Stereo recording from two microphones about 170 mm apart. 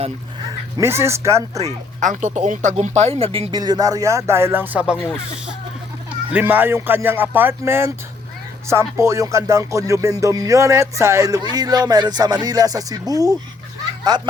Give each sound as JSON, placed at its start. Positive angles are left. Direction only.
{"t": 0.8, "sound": "speech", "side_deg": -15}
{"t": 1.5, "sound": "speech", "side_deg": -45}
{"t": 6.3, "sound": "speech", "side_deg": -10}
{"t": 9.0, "sound": "speech", "side_deg": -20}